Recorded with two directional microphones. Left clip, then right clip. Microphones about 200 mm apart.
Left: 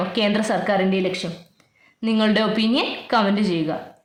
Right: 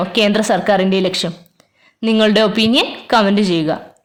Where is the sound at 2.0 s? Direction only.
40° right (ahead or behind).